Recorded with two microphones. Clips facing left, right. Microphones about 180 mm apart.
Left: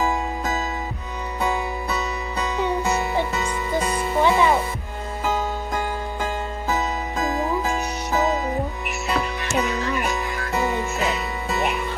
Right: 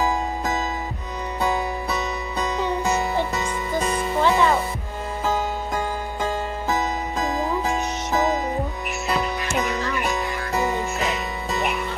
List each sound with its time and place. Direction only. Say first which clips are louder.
4.2 s music: left 1 dB; 15° left (ahead or behind)
6.2 s music: right 3 dB; centre (ahead or behind)